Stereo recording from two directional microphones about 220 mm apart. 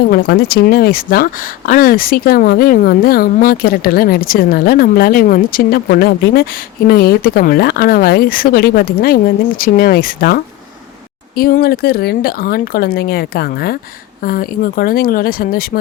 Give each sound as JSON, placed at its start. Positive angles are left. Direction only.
{"t": 0.1, "sound": "speech", "side_deg": 45}